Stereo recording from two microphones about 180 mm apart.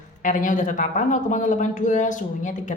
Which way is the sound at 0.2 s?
45° left (ahead or behind).